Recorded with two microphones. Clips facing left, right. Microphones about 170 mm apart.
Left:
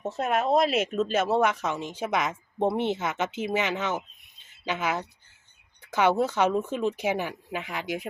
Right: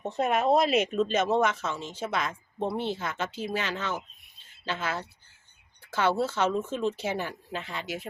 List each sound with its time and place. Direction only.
0.0 s speech: 5° left (ahead or behind)